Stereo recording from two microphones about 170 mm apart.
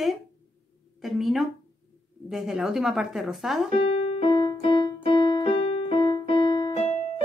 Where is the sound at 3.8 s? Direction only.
35° left (ahead or behind).